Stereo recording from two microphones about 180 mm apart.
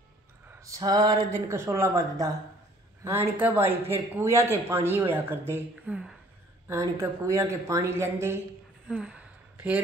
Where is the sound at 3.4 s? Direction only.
10° right (ahead or behind).